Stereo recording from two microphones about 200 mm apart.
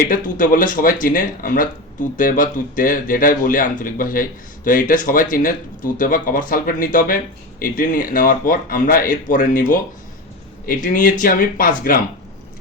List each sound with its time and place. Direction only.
0.1 s speech: 45° left (ahead or behind)
10.8 s speech: 40° left (ahead or behind)